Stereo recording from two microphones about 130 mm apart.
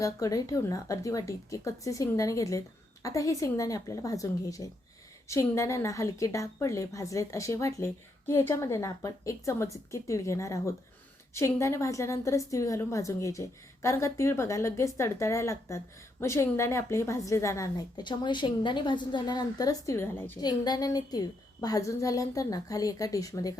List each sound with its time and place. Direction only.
0.0 s a woman's voice: 25° left (ahead or behind)
20.4 s a woman's voice: 30° left (ahead or behind)